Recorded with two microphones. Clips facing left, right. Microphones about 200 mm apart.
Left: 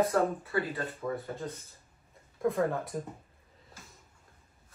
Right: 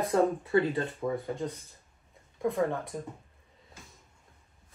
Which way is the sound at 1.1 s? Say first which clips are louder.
Right 4 dB; centre (ahead or behind).